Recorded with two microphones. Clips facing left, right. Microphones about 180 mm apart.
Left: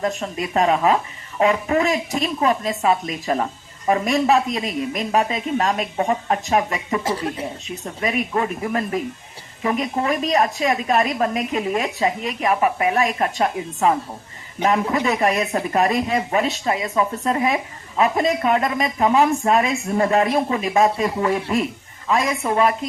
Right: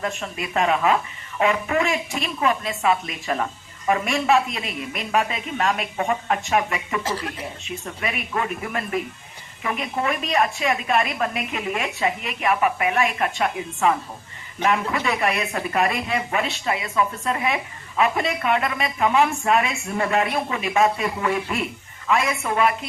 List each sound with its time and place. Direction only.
0.0 s speech: 35° left (ahead or behind)
15.0 s speech: 40° left (ahead or behind)